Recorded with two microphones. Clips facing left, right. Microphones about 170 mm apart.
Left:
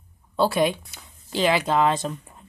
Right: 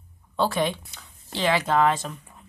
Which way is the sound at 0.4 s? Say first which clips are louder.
Left 3 dB; 10° left (ahead or behind).